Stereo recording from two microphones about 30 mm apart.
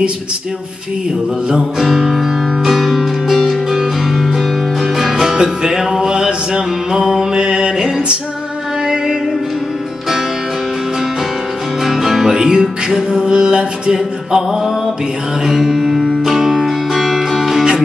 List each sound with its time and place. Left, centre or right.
2.0 s music: centre
7.3 s music: right
11.8 s music: centre
12.3 s music: right
13.1 s mantra: right
13.9 s music: centre
16.9 s music: centre